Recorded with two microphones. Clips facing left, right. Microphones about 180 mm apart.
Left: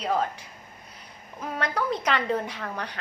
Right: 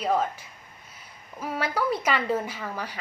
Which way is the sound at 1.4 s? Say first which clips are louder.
Right 1 dB; 5° right (ahead or behind).